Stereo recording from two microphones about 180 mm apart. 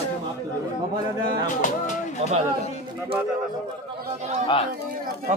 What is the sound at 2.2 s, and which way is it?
Speech, 35° right (ahead or behind).